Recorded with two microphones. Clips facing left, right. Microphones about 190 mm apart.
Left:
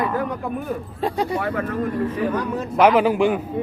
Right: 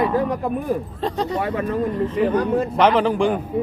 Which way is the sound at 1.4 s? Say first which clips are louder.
Right 1 dB; 20° right (ahead or behind).